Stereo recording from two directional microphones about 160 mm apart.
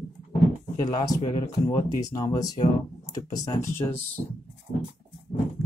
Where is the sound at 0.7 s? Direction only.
25° left (ahead or behind).